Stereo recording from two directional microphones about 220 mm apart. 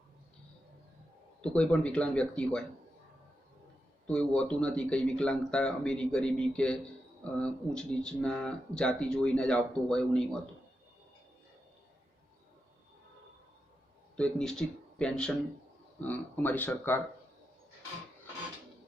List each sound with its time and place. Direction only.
1.4 s speech: 5° left (ahead or behind)
4.0 s speech: 5° left (ahead or behind)
14.2 s speech: 5° left (ahead or behind)